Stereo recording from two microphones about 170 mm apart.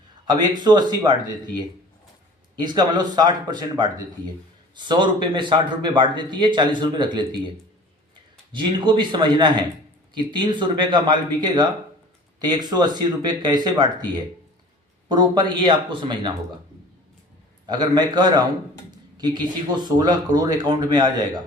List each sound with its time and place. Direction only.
0.3 s speech: 25° right (ahead or behind)
8.5 s speech: 30° right (ahead or behind)
17.7 s speech: 25° right (ahead or behind)